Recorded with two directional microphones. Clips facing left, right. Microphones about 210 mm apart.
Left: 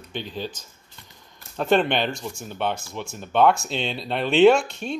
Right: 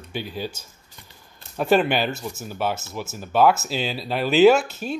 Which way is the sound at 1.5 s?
5° right (ahead or behind).